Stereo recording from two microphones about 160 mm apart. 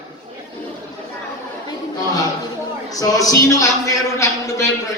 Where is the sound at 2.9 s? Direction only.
20° left (ahead or behind).